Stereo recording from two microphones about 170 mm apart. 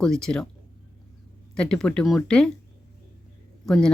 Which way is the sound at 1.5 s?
5° left (ahead or behind).